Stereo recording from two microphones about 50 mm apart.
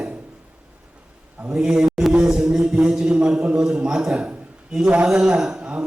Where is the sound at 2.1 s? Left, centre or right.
Centre.